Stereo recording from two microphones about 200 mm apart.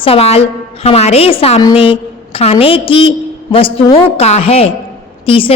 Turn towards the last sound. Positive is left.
turn(degrees=25)  # may be behind; listen again after turning